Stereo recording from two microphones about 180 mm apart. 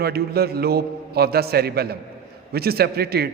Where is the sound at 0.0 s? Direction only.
60° right (ahead or behind).